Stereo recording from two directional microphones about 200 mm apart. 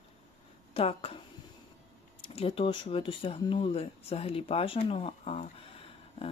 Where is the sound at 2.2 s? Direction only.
30° left (ahead or behind).